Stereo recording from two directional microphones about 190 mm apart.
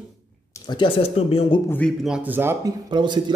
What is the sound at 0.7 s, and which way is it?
Speech, 30° left (ahead or behind).